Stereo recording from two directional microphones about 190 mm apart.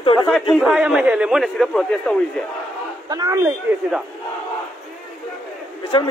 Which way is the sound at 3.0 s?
20° right (ahead or behind).